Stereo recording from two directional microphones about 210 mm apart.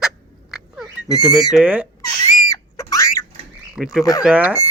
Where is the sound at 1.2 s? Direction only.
Centre (ahead or behind).